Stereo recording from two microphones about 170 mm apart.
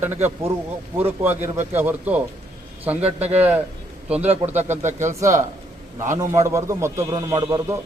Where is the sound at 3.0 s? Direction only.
40° right (ahead or behind).